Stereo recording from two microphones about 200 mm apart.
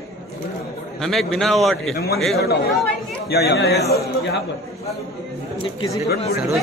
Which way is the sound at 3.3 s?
55° left (ahead or behind).